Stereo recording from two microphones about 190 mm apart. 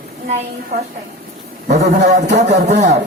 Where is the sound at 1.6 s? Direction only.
40° right (ahead or behind).